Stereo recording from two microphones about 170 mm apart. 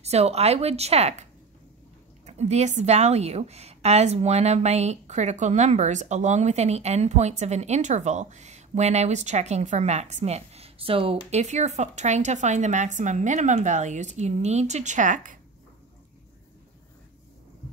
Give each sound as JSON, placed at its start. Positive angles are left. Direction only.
{"t": 0.0, "sound": "a woman's voice", "side_deg": -40}
{"t": 2.2, "sound": "a woman's voice", "side_deg": -40}